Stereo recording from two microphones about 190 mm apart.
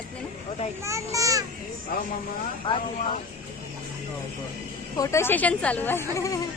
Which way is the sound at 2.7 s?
25° left (ahead or behind).